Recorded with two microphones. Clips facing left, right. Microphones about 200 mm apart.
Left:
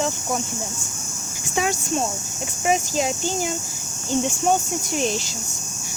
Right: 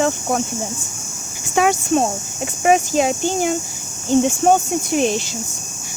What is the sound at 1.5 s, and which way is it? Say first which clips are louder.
Speech: right 7 dB; 60° right (ahead or behind).